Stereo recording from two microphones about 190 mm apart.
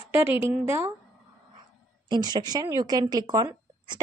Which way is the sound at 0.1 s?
10° right (ahead or behind).